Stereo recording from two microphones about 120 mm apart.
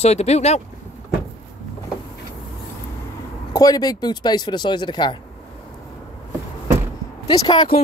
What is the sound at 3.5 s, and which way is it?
Speech, 30° left (ahead or behind).